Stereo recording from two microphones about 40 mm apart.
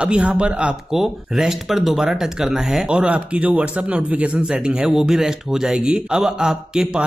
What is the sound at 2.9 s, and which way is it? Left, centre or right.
A man's voice, right.